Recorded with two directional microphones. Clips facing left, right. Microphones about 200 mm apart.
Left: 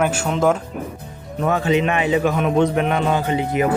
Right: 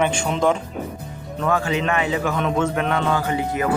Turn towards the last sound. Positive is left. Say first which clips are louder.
# left 3 dB
turn(degrees=20)  # may be behind; listen again after turning